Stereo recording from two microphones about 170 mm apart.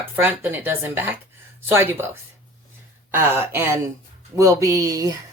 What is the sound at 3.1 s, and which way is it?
Speech, 15° right (ahead or behind).